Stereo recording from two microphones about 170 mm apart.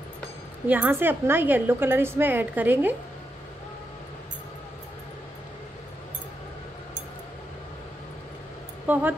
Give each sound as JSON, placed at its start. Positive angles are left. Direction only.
{"t": 0.7, "sound": "a woman's voice", "side_deg": -10}
{"t": 8.8, "sound": "speech", "side_deg": -10}